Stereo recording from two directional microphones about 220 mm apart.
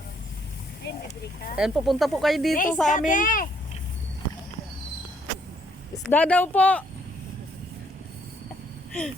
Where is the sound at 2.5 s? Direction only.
35° left (ahead or behind).